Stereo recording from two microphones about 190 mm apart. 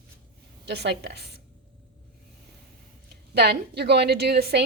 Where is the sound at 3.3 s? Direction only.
55° right (ahead or behind).